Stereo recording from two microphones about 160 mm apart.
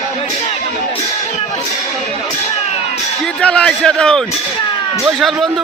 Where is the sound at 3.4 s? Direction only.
5° left (ahead or behind).